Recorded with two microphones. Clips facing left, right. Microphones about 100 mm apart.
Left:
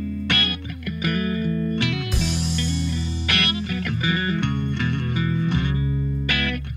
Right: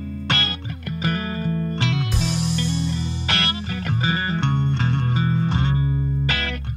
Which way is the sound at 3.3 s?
30° right (ahead or behind).